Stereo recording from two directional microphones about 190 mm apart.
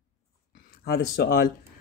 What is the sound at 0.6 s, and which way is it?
Speech, 55° left (ahead or behind).